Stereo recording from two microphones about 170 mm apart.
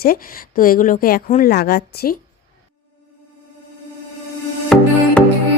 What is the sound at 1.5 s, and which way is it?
Speech, 65° left (ahead or behind).